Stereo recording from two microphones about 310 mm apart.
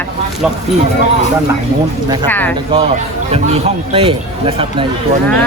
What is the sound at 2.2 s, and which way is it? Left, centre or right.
Speech, centre.